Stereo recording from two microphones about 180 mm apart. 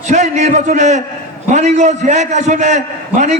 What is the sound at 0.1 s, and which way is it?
A man's voice, 40° right (ahead or behind).